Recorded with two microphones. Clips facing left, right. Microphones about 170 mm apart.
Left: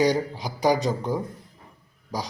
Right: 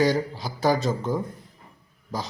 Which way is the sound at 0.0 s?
15° left (ahead or behind).